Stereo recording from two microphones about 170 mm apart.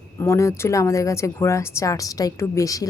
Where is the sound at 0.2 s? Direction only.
15° left (ahead or behind).